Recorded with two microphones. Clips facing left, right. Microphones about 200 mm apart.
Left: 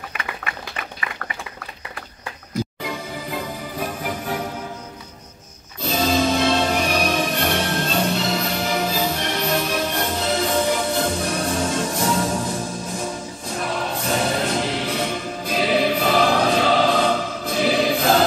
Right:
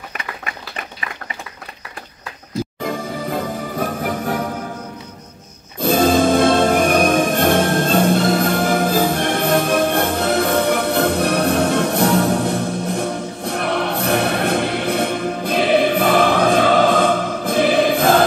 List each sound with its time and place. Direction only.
2.8 s music: 50° right (ahead or behind)
5.8 s music: 55° right (ahead or behind)